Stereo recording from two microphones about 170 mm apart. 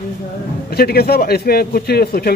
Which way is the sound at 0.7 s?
65° left (ahead or behind).